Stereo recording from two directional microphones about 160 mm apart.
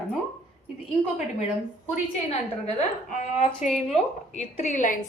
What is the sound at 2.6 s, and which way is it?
A woman's voice, 45° left (ahead or behind).